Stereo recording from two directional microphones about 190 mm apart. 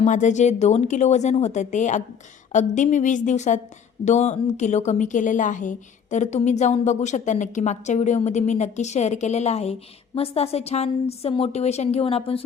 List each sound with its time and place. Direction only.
0.0 s a woman's voice: 40° left (ahead or behind)